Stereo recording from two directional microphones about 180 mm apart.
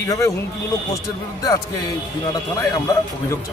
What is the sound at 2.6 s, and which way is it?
Speech, 20° left (ahead or behind).